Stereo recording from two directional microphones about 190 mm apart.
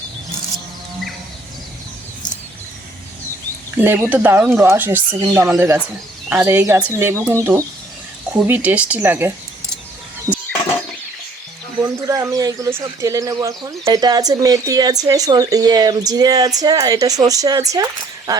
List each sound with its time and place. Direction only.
3.8 s speech: 10° right (ahead or behind)
12.0 s speech: 20° right (ahead or behind)